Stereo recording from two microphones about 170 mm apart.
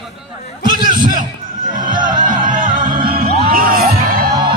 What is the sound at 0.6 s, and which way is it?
Music, 55° right (ahead or behind).